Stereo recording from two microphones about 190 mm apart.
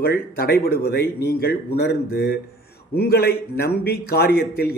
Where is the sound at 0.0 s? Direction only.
55° left (ahead or behind).